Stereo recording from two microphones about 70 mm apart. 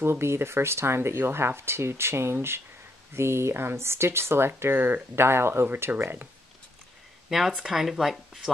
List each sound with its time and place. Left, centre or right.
0.0 s speech: right
7.2 s speech: centre